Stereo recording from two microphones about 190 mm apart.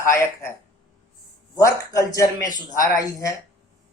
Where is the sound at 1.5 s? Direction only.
15° left (ahead or behind).